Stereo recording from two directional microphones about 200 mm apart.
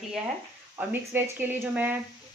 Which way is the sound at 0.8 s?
10° right (ahead or behind).